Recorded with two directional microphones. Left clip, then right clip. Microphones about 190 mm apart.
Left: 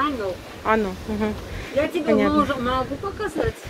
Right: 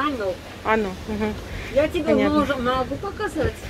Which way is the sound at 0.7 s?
15° left (ahead or behind).